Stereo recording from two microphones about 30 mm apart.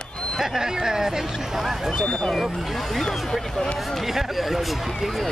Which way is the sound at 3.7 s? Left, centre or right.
Centre.